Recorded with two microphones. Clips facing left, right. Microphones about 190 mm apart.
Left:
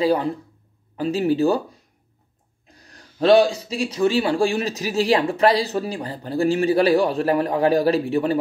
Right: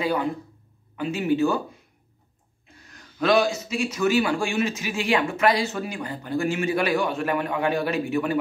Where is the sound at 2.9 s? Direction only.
30° left (ahead or behind).